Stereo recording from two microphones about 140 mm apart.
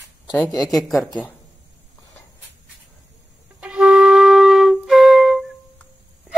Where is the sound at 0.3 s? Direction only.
25° left (ahead or behind).